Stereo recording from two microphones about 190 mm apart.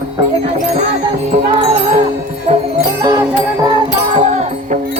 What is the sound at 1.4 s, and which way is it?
Music, 35° right (ahead or behind).